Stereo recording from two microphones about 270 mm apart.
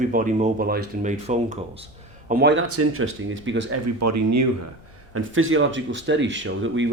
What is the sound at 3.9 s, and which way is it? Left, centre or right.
Speech, right.